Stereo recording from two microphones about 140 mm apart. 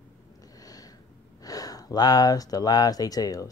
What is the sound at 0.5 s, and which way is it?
Sniff, 25° left (ahead or behind).